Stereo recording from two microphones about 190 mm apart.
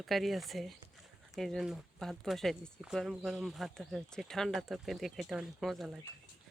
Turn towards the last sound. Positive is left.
turn(degrees=0)  # may be behind; listen again after turning